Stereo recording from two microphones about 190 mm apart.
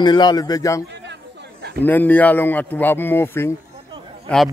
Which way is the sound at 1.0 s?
65° right (ahead or behind).